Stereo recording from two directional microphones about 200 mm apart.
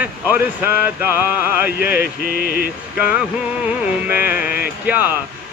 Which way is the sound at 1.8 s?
50° left (ahead or behind).